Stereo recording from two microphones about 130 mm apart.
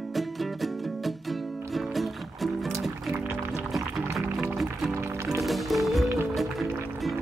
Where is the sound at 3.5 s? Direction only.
5° right (ahead or behind).